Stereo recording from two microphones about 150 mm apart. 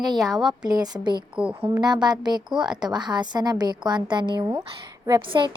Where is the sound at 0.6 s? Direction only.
25° right (ahead or behind).